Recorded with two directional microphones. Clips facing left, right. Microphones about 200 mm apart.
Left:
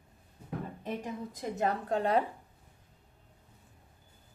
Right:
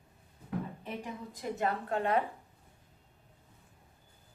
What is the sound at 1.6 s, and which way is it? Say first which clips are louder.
Speech: left 2 dB; 35° left (ahead or behind).